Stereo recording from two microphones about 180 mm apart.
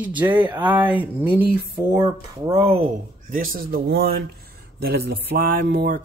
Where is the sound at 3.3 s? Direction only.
50° right (ahead or behind).